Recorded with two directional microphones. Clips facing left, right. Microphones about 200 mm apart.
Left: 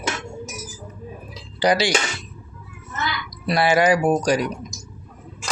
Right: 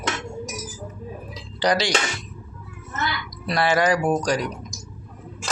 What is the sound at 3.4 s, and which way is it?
Speech, 10° left (ahead or behind).